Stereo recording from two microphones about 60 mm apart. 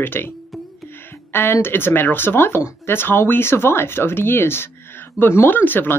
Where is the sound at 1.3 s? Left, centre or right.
Left.